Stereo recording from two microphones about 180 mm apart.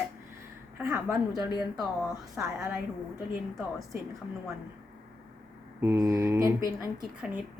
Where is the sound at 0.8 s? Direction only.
15° right (ahead or behind).